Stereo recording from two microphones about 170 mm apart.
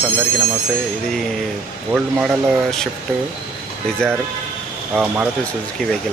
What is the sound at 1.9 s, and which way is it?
Speech, 5° right (ahead or behind).